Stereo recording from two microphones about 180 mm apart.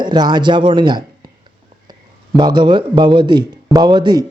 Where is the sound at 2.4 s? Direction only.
25° right (ahead or behind).